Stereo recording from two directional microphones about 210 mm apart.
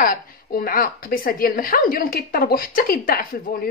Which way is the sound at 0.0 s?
45° left (ahead or behind).